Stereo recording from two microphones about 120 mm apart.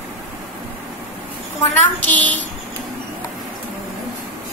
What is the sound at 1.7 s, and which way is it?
Child singing, 15° left (ahead or behind).